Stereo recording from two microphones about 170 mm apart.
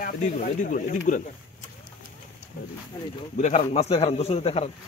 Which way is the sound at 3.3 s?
40° left (ahead or behind).